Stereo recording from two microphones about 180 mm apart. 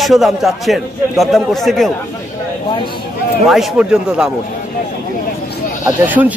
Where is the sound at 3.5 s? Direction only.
5° right (ahead or behind).